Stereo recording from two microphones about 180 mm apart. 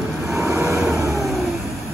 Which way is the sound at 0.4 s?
15° right (ahead or behind).